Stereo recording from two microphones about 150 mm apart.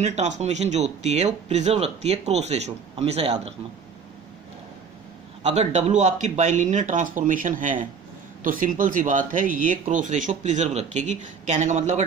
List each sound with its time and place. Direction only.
0.0 s speech: 50° right (ahead or behind)
5.4 s speech: 45° right (ahead or behind)